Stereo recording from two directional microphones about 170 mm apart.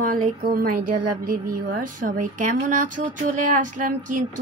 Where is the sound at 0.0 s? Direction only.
60° right (ahead or behind).